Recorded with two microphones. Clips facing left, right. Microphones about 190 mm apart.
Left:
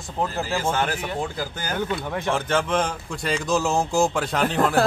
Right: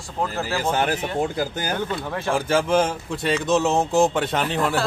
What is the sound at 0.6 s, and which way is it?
Speech, 15° right (ahead or behind).